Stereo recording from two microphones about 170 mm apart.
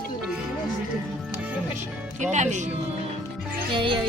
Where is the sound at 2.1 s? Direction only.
45° right (ahead or behind).